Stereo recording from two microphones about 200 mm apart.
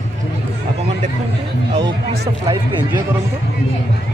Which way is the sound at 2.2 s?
25° right (ahead or behind).